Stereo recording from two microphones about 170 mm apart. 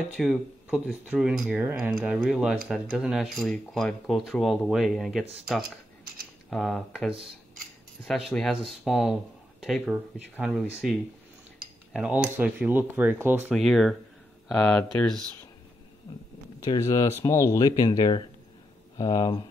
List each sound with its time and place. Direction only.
0.2 s speech: centre (ahead or behind)
6.5 s speech: centre (ahead or behind)
11.9 s speech: 5° right (ahead or behind)
13.5 s speech: centre (ahead or behind)
16.5 s speech: 20° left (ahead or behind)